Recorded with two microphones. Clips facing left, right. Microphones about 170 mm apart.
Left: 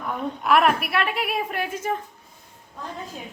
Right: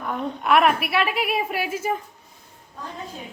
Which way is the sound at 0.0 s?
Centre (ahead or behind).